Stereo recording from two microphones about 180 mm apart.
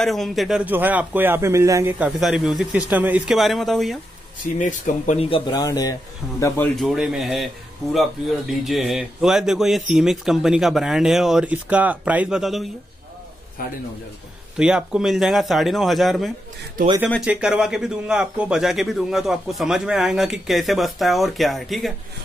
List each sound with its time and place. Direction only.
0.0 s speech: centre (ahead or behind)
4.6 s speech: 45° left (ahead or behind); by 5.9 s 20° left (ahead or behind)
6.2 s a man's voice: centre (ahead or behind)
13.6 s a man's voice: 55° left (ahead or behind)
14.6 s a man's voice: 5° right (ahead or behind)